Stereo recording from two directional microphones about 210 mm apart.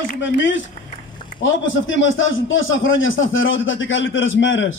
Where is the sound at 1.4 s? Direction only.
65° left (ahead or behind).